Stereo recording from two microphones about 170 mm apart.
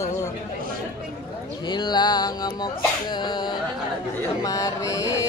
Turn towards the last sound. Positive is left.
turn(degrees=20)  # may be behind; listen again after turning